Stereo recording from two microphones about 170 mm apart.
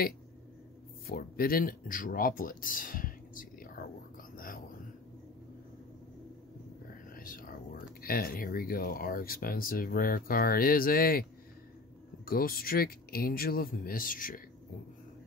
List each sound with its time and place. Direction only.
1.0 s speech: 60° left (ahead or behind)
4.4 s a sound: 55° left (ahead or behind)
7.2 s speech: 55° left (ahead or behind)
12.3 s speech: 60° left (ahead or behind)